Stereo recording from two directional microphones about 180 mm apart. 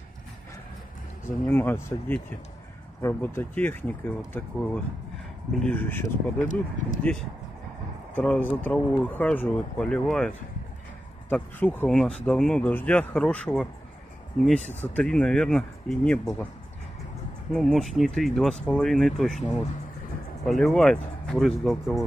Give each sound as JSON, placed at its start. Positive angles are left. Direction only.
{"t": 1.5, "sound": "speech", "side_deg": 10}
{"t": 6.4, "sound": "speech", "side_deg": 45}
{"t": 7.0, "sound": "speech", "side_deg": 5}
{"t": 15.0, "sound": "speech", "side_deg": 5}
{"t": 17.5, "sound": "speech", "side_deg": 5}